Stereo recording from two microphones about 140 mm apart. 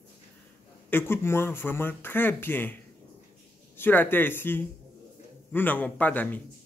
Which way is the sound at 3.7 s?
15° left (ahead or behind).